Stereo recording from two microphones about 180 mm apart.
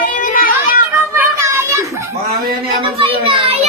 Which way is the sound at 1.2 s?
15° right (ahead or behind).